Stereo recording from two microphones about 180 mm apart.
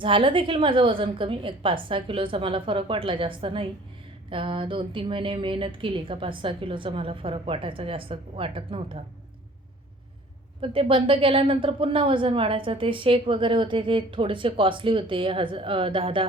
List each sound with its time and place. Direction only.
0.0 s a woman's voice: 30° right (ahead or behind)
10.6 s a woman's voice: 30° right (ahead or behind)